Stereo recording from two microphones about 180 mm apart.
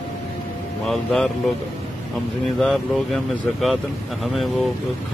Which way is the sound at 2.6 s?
Centre (ahead or behind).